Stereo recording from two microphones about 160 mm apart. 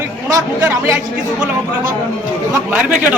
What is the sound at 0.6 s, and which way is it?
Speech, 15° right (ahead or behind).